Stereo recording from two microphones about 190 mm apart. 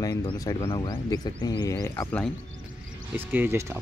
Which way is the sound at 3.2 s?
10° right (ahead or behind).